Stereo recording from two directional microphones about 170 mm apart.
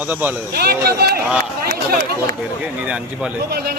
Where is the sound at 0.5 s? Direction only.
65° right (ahead or behind).